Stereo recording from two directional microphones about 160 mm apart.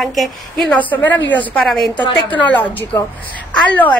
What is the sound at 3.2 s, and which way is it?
Speech, 10° left (ahead or behind).